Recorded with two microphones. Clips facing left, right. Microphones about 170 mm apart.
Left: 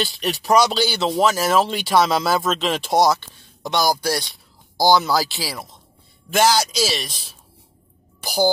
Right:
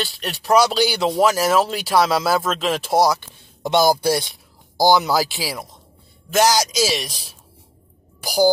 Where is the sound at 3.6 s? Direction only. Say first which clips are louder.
Right 4 dB; 25° right (ahead or behind).